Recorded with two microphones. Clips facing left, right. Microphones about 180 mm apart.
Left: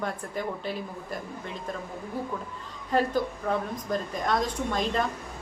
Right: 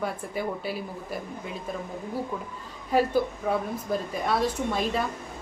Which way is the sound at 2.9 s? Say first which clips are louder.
Right 2 dB; 10° right (ahead or behind).